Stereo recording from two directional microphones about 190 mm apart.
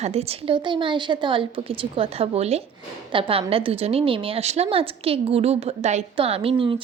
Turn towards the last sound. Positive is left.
turn(degrees=-30)  # may be behind; listen again after turning